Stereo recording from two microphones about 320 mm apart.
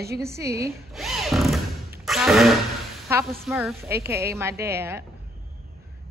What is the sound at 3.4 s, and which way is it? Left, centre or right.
A woman's voice, centre.